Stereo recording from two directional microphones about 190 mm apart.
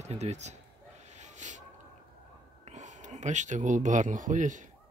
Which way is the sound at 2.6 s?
40° right (ahead or behind).